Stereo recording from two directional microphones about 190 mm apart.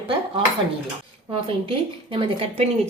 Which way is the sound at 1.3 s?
25° right (ahead or behind).